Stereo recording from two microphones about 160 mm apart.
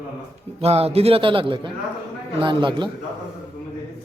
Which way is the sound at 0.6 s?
40° right (ahead or behind).